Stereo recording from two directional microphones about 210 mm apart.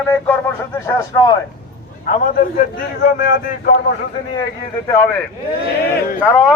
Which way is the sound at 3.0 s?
45° left (ahead or behind).